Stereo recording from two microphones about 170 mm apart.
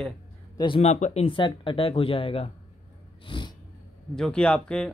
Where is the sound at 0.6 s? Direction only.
35° left (ahead or behind).